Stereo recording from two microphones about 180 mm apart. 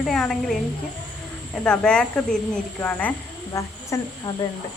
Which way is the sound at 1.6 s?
5° left (ahead or behind).